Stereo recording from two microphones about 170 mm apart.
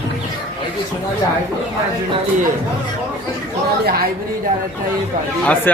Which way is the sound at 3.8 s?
65° right (ahead or behind).